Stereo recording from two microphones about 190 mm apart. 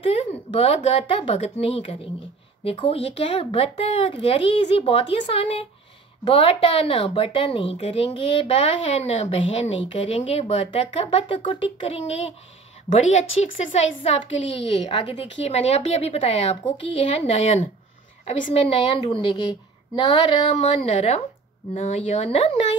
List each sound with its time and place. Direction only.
0.1 s a woman's voice: 30° left (ahead or behind)